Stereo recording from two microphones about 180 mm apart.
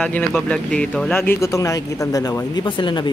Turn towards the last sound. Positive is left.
turn(degrees=25)  # may be behind; listen again after turning